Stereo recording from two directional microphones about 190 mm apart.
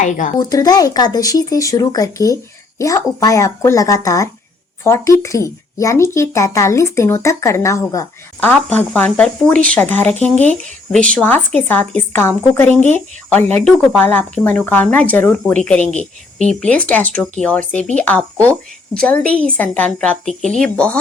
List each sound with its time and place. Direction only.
0.0 s speech: 40° left (ahead or behind)
0.3 s speech: 20° left (ahead or behind)
16.0 s cricket: 35° left (ahead or behind)
16.6 s a woman's voice: 5° left (ahead or behind)